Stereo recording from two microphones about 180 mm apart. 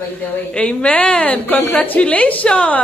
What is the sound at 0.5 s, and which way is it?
A woman's voice, 5° left (ahead or behind).